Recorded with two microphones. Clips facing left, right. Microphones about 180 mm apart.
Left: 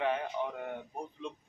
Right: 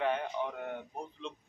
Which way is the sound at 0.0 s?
Centre (ahead or behind).